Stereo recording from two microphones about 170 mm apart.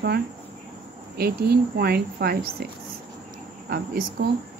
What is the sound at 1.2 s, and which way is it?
Speech, 65° right (ahead or behind).